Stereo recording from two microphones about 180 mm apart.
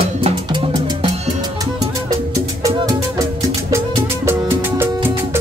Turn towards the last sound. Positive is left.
turn(degrees=-10)  # may be behind; listen again after turning